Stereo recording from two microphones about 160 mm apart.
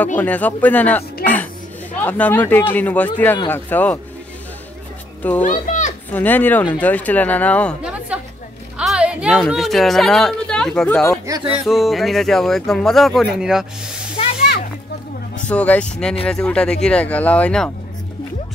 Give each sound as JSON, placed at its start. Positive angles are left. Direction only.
{"t": 0.0, "sound": "speech", "side_deg": 10}
{"t": 1.2, "sound": "music", "side_deg": 10}
{"t": 2.0, "sound": "speech", "side_deg": 10}
{"t": 5.4, "sound": "a child's voice", "side_deg": 50}
{"t": 6.1, "sound": "speech", "side_deg": 10}
{"t": 8.7, "sound": "a sound", "side_deg": -5}
{"t": 9.5, "sound": "speech", "side_deg": 0}
{"t": 11.3, "sound": "a sound", "side_deg": -20}
{"t": 11.6, "sound": "speech", "side_deg": 0}
{"t": 15.4, "sound": "speech", "side_deg": 10}